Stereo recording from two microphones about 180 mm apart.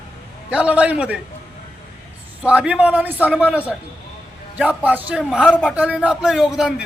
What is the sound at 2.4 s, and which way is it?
A man's voice, 5° right (ahead or behind).